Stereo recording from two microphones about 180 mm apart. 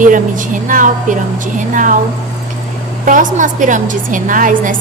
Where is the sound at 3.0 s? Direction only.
45° right (ahead or behind).